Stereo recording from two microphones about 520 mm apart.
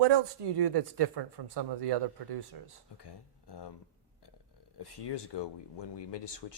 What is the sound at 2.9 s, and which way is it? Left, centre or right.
Speech, left.